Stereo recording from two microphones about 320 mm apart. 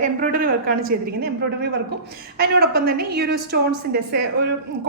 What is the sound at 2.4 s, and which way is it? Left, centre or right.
Speech, right.